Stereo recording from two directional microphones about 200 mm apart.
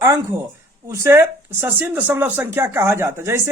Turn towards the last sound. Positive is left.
turn(degrees=-15)  # may be behind; listen again after turning